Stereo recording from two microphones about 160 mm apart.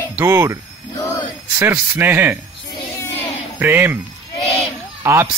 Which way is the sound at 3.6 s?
15° right (ahead or behind).